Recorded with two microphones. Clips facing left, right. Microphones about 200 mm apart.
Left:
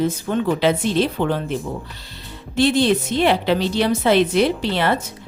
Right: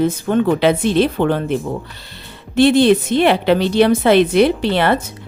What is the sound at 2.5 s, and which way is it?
A woman's voice, 60° right (ahead or behind).